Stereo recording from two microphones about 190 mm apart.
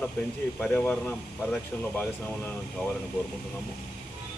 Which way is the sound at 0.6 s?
5° left (ahead or behind).